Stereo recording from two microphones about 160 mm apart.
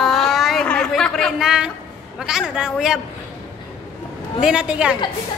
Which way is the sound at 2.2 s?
5° right (ahead or behind).